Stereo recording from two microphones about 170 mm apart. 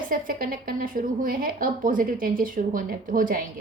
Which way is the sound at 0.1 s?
55° right (ahead or behind).